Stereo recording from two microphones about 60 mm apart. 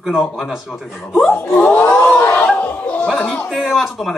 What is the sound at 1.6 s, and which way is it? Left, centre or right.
Speech, left.